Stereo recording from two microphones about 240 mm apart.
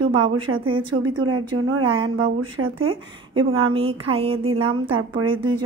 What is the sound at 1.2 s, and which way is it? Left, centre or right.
Speech, right.